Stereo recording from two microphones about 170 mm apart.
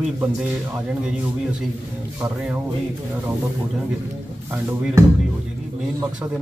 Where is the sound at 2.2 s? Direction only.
10° right (ahead or behind).